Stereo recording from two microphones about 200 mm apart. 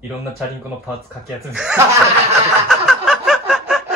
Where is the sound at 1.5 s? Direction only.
5° right (ahead or behind).